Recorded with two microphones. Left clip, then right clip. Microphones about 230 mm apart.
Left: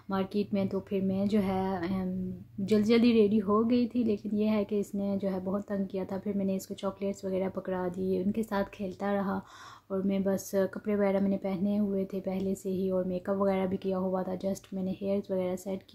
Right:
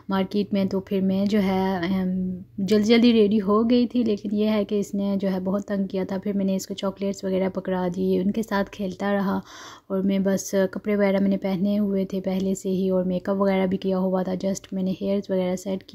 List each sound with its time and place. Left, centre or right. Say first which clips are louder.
0.1 s a woman's voice: right 6 dB; right